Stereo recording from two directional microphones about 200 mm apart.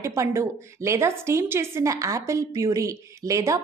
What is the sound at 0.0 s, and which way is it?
A woman's voice, 15° right (ahead or behind).